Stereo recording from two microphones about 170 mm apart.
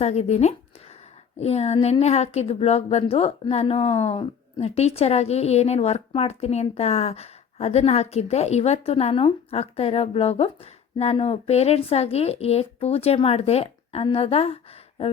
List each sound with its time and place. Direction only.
0.0 s speech: 40° left (ahead or behind)